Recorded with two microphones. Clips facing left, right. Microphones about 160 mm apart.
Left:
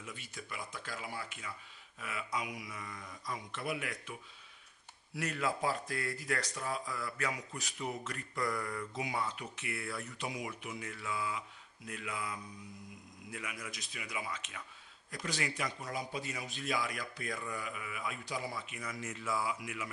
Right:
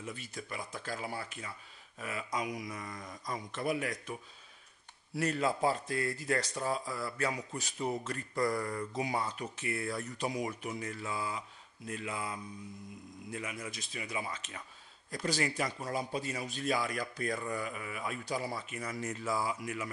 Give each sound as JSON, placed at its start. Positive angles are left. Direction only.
{"t": 0.0, "sound": "speech", "side_deg": -40}